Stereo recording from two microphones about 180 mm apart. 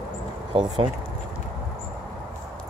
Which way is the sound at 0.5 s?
30° right (ahead or behind).